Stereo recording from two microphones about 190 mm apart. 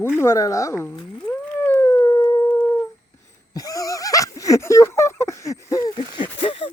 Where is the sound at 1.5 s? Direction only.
10° left (ahead or behind).